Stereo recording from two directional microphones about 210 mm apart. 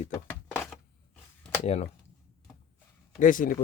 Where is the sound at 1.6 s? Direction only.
30° left (ahead or behind).